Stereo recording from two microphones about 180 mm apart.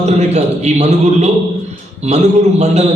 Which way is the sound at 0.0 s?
40° right (ahead or behind).